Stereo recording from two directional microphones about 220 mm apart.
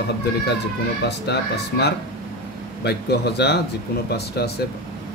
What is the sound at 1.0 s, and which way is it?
Speech, 50° left (ahead or behind).